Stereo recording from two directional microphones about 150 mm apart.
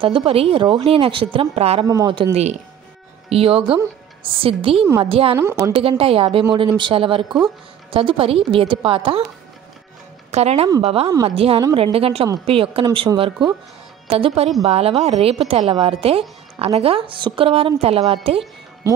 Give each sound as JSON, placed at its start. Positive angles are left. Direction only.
{"t": 0.0, "sound": "a woman's voice", "side_deg": -35}
{"t": 1.9, "sound": "a woman's voice", "side_deg": -25}
{"t": 3.3, "sound": "a woman's voice", "side_deg": -40}
{"t": 5.3, "sound": "a woman's voice", "side_deg": -15}
{"t": 5.7, "sound": "a woman's voice", "side_deg": -40}
{"t": 10.3, "sound": "a woman's voice", "side_deg": -45}
{"t": 14.0, "sound": "a woman's voice", "side_deg": -40}